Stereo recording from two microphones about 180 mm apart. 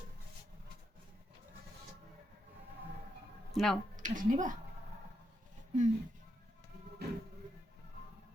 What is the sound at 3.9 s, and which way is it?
Speech, 45° right (ahead or behind).